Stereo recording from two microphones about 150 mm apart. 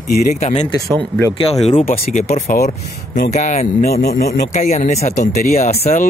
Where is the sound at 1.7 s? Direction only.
40° left (ahead or behind).